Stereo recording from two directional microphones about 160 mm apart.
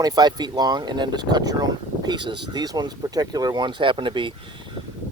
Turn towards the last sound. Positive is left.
turn(degrees=-30)  # may be behind; listen again after turning